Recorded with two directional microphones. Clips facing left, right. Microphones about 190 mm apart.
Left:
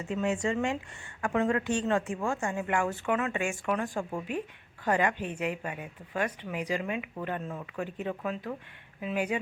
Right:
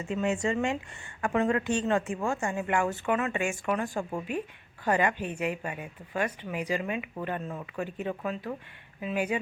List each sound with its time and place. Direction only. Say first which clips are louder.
0.1 s a woman's voice: right 1 dB; 20° right (ahead or behind); by 9.4 s 5° right (ahead or behind)